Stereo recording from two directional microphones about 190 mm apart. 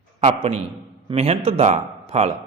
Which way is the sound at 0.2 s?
35° right (ahead or behind).